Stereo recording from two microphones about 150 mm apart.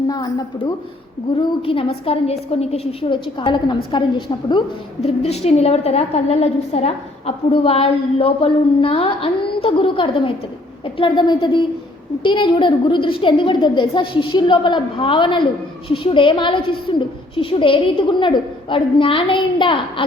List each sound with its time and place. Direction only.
0.1 s a woman's voice: 25° left (ahead or behind)
1.4 s a woman's voice: 35° left (ahead or behind)
5.0 s a woman's voice: 45° left (ahead or behind)